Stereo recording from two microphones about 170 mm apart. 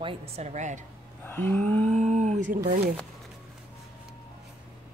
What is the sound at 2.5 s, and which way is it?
Speech, 60° right (ahead or behind).